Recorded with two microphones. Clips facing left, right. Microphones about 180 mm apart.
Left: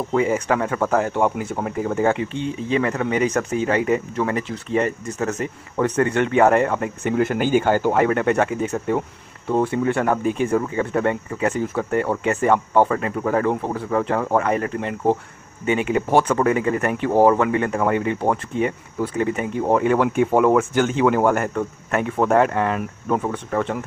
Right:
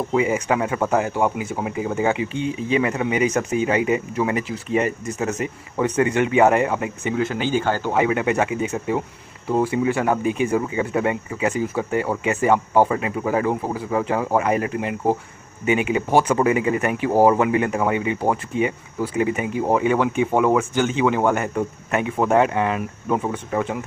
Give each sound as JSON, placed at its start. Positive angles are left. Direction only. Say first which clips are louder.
{"t": 0.1, "sound": "speech", "louder": "left 1 dB", "side_deg": -10}
{"t": 7.2, "sound": "speech", "louder": "left 4 dB", "side_deg": 50}
{"t": 7.6, "sound": "speech", "louder": "left 4 dB", "side_deg": 10}
{"t": 7.9, "sound": "speech", "louder": "left 2 dB", "side_deg": -5}